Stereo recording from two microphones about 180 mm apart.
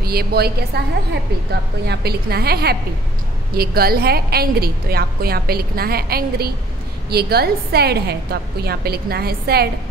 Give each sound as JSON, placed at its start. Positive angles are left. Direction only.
{"t": 0.0, "sound": "a woman's voice", "side_deg": -60}